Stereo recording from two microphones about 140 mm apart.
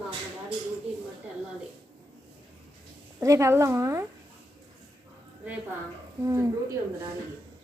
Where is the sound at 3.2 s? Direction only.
20° right (ahead or behind).